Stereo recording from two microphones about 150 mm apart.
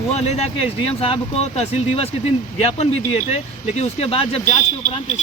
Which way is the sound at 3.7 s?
45° left (ahead or behind).